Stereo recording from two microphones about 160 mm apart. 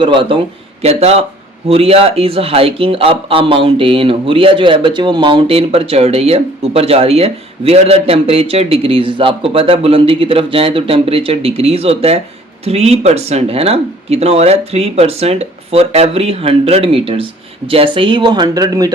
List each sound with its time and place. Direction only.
0.0 s speech: 35° right (ahead or behind)